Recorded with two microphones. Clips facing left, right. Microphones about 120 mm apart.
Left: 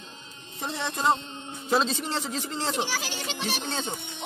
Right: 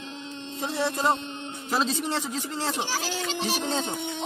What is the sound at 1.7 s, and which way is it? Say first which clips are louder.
Speech: left 1 dB; 5° right (ahead or behind).